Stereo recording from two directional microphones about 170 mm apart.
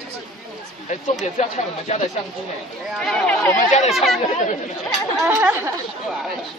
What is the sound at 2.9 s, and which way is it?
Speech, centre (ahead or behind).